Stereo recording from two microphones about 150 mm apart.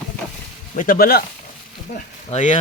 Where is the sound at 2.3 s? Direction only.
55° left (ahead or behind).